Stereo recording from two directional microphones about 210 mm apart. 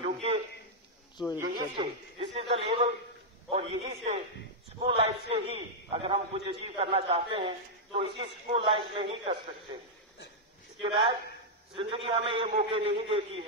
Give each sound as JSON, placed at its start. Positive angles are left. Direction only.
{"t": 0.0, "sound": "a sound", "side_deg": -25}
{"t": 1.5, "sound": "a man's voice", "side_deg": -25}
{"t": 10.8, "sound": "a man's voice", "side_deg": -25}